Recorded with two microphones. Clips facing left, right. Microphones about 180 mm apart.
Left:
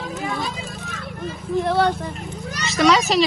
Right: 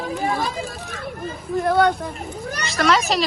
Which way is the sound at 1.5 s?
Centre (ahead or behind).